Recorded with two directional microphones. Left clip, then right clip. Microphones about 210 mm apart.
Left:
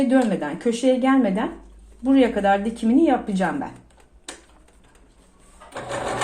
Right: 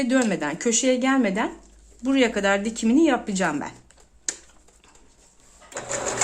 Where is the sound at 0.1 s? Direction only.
25° right (ahead or behind).